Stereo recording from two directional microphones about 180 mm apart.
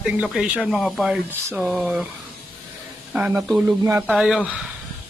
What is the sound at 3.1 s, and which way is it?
Speech, 5° right (ahead or behind).